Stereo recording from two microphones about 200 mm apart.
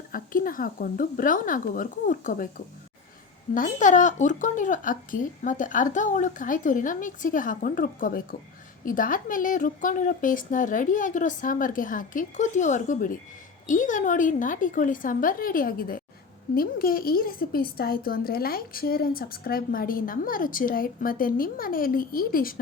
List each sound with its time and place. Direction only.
0.1 s a woman's voice: 45° left (ahead or behind)
3.5 s a woman's voice: 40° left (ahead or behind)